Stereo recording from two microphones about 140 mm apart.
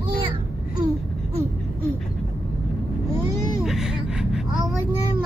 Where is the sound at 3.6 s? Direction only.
5° right (ahead or behind).